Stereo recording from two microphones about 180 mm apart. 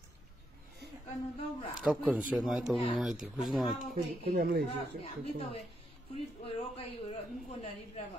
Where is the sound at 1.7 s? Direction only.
5° right (ahead or behind).